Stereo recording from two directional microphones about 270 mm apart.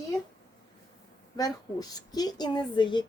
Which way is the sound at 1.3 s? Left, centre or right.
Centre.